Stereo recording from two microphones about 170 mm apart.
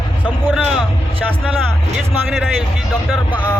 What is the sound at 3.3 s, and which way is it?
Speech, 25° left (ahead or behind).